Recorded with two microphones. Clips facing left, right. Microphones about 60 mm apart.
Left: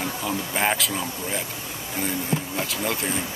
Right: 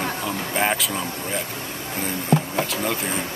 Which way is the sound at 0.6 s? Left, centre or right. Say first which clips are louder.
Right 2 dB; centre.